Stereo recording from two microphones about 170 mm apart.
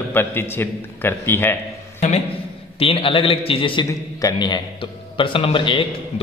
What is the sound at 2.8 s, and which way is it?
A man's voice, 30° left (ahead or behind).